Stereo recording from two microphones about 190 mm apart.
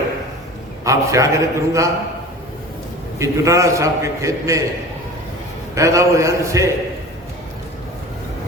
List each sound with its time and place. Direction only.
0.9 s a man's voice: 15° right (ahead or behind)
3.2 s a man's voice: 15° right (ahead or behind)
5.7 s a man's voice: 15° right (ahead or behind)